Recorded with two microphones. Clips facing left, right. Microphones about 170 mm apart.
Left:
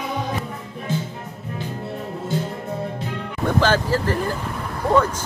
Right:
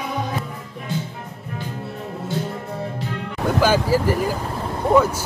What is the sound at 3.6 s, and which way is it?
Speech, 10° right (ahead or behind).